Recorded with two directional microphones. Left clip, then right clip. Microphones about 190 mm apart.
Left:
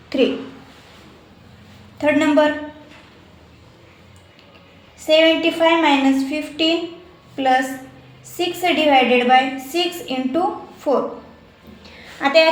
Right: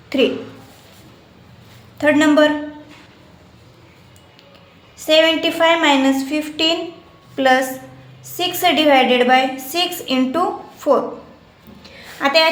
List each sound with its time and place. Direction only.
0.1 s speech: 15° right (ahead or behind)
2.0 s a woman's voice: 25° right (ahead or behind)
5.0 s a woman's voice: 25° right (ahead or behind)
11.8 s a sound: 20° right (ahead or behind)